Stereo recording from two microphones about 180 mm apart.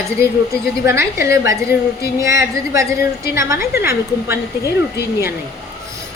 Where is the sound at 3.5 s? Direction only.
55° left (ahead or behind).